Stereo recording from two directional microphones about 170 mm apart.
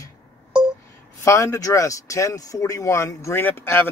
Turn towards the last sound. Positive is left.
turn(degrees=15)  # may be behind; listen again after turning